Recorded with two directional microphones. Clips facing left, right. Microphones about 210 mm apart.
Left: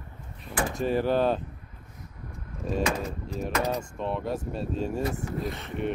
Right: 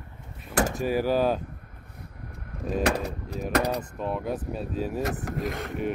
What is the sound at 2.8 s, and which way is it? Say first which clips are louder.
Speech: right 3 dB; 65° right (ahead or behind).